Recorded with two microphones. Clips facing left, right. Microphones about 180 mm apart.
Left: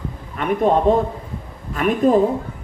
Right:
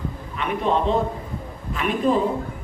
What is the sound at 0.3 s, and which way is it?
A man's voice, 45° left (ahead or behind).